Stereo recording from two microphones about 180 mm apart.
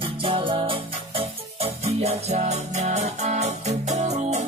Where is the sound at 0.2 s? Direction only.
30° right (ahead or behind).